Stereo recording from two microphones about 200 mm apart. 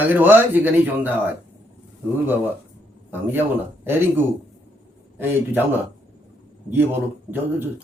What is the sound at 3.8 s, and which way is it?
Speech, 10° right (ahead or behind).